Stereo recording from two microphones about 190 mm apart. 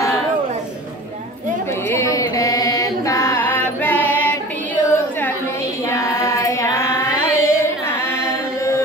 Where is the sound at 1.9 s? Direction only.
15° left (ahead or behind).